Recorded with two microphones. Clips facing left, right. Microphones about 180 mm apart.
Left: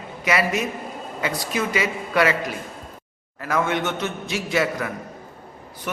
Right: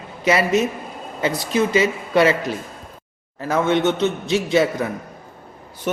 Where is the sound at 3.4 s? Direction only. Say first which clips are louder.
Right 5 dB; 30° right (ahead or behind).